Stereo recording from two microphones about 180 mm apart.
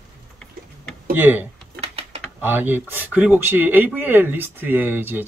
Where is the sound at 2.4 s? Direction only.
10° right (ahead or behind).